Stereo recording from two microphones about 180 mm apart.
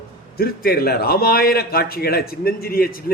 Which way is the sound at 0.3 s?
60° left (ahead or behind).